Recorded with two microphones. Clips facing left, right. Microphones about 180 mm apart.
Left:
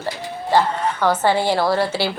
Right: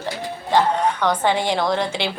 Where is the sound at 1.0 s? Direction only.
10° left (ahead or behind).